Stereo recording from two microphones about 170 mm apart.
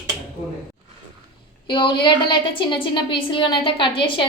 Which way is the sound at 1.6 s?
30° left (ahead or behind).